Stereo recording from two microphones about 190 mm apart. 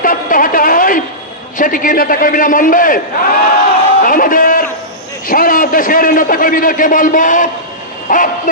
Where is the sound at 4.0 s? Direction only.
45° left (ahead or behind).